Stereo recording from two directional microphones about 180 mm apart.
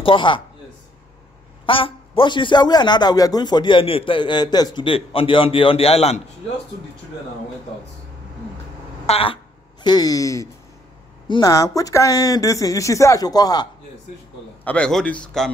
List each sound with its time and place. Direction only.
0.0 s a man's voice: 30° left (ahead or behind)
1.7 s a man's voice: 30° left (ahead or behind)
9.0 s a sound: 35° left (ahead or behind)
9.8 s a man's voice: 20° left (ahead or behind)
14.6 s a man's voice: 5° left (ahead or behind)